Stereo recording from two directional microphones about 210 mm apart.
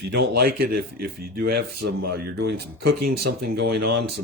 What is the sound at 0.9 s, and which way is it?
Speech, 45° right (ahead or behind).